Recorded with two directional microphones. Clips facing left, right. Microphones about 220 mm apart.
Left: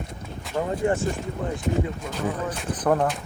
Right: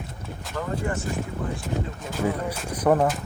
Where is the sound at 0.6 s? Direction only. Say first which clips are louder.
Left 5 dB; 25° left (ahead or behind).